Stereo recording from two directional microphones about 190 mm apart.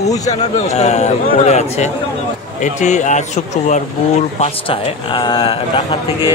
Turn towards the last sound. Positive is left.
turn(degrees=25)  # may be behind; listen again after turning